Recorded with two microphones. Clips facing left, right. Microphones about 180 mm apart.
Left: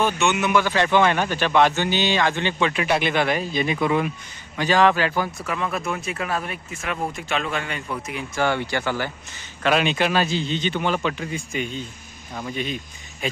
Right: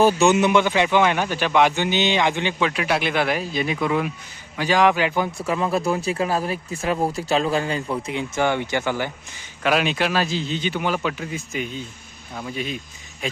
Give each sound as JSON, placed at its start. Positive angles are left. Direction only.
{"t": 0.0, "sound": "a man's voice", "side_deg": -35}
{"t": 4.5, "sound": "speech", "side_deg": -10}
{"t": 9.6, "sound": "a man's voice", "side_deg": -5}